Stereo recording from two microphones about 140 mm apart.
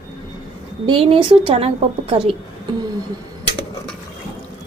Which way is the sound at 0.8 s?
40° right (ahead or behind).